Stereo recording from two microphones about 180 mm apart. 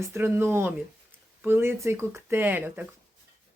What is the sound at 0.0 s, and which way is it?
Speech, 15° right (ahead or behind).